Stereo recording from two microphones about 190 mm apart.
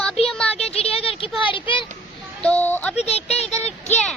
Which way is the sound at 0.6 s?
30° left (ahead or behind).